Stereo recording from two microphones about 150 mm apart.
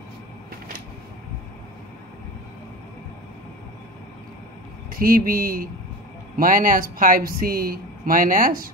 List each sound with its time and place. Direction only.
4.9 s speech: 70° right (ahead or behind)